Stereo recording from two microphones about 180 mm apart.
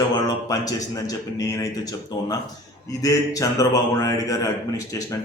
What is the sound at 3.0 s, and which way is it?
A man's voice, 20° left (ahead or behind).